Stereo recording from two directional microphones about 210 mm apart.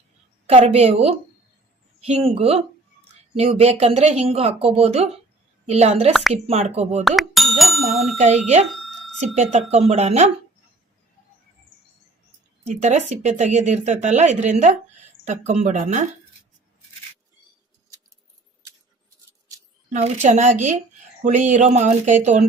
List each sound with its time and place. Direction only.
0.4 s speech: 30° right (ahead or behind)
7.2 s bicycle bell: centre (ahead or behind)
8.2 s speech: 35° right (ahead or behind)
8.7 s a sound: centre (ahead or behind)
9.3 s speech: 35° right (ahead or behind)
12.6 s speech: 35° right (ahead or behind)
19.9 s speech: 35° right (ahead or behind)